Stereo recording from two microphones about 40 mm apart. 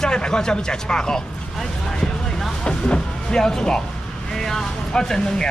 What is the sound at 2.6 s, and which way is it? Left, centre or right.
Vehicle, left.